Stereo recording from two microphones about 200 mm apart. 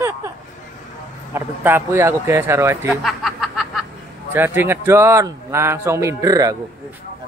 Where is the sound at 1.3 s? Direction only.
10° right (ahead or behind).